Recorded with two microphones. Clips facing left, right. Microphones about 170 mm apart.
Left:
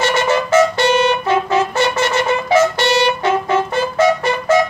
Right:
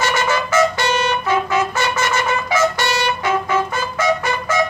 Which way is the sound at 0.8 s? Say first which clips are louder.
Left 5 dB; 60° left (ahead or behind).